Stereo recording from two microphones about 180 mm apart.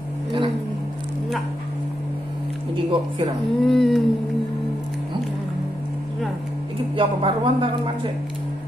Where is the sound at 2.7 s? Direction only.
30° right (ahead or behind).